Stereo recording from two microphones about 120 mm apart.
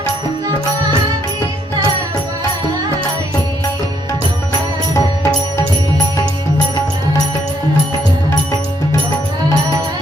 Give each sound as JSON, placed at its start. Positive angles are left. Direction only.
{"t": 4.9, "sound": "music", "side_deg": 25}